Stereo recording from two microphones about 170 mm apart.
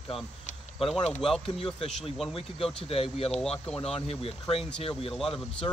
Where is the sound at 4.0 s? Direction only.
35° left (ahead or behind).